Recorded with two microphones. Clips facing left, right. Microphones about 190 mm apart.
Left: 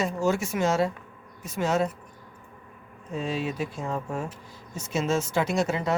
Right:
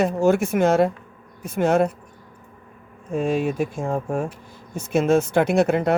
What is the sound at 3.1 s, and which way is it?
Speech, 50° right (ahead or behind).